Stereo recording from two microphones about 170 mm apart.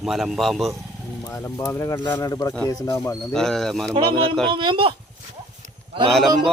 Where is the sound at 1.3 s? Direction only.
10° left (ahead or behind).